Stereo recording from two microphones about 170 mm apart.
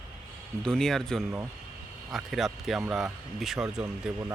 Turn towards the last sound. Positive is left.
turn(degrees=-5)  # may be behind; listen again after turning